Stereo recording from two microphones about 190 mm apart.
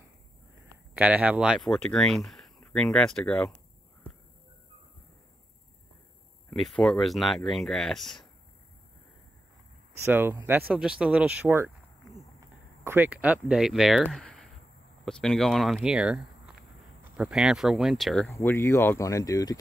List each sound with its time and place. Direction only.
0.9 s speech: 5° right (ahead or behind)
6.5 s speech: centre (ahead or behind)
10.0 s speech: 10° right (ahead or behind)
18.3 s speech: 15° left (ahead or behind)